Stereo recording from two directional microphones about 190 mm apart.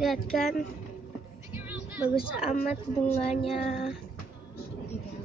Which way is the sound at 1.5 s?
10° right (ahead or behind).